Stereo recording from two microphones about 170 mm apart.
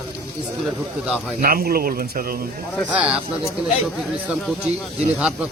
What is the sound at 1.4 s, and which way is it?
Speech, 60° right (ahead or behind).